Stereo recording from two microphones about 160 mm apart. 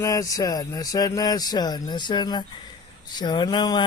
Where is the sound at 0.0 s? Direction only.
20° left (ahead or behind).